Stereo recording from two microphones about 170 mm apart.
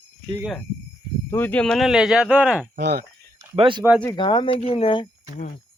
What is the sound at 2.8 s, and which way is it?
Speech, 75° right (ahead or behind).